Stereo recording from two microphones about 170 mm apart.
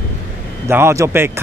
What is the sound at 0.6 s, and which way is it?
Speech, 15° right (ahead or behind).